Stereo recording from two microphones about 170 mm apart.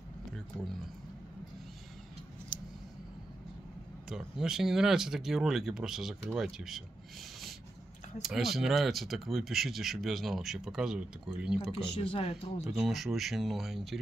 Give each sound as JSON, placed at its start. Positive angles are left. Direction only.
{"t": 2.5, "sound": "scissors", "side_deg": 25}
{"t": 4.1, "sound": "speech", "side_deg": -5}
{"t": 8.2, "sound": "speech", "side_deg": 0}
{"t": 11.7, "sound": "speech", "side_deg": 30}
{"t": 12.6, "sound": "speech", "side_deg": -5}